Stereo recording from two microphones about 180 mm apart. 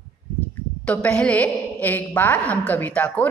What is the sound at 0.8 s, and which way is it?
A woman's voice, 5° left (ahead or behind).